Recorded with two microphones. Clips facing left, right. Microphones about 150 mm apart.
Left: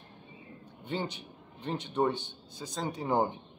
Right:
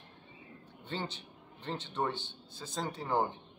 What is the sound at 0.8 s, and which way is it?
A man's voice, 15° left (ahead or behind).